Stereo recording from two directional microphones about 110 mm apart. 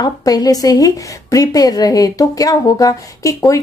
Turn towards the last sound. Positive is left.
turn(degrees=30)  # may be behind; listen again after turning